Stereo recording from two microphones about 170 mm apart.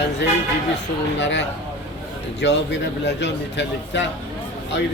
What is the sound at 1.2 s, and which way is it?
A man's voice, 90° left.